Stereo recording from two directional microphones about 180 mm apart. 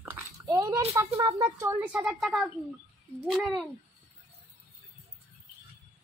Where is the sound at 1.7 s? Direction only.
10° right (ahead or behind).